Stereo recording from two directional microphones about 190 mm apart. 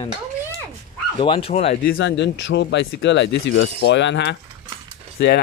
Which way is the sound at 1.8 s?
60° left (ahead or behind).